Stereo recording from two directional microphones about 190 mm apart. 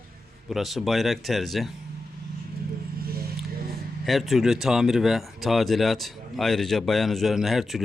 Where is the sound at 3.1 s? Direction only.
55° right (ahead or behind).